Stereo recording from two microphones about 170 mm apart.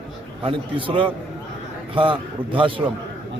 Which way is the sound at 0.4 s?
30° right (ahead or behind).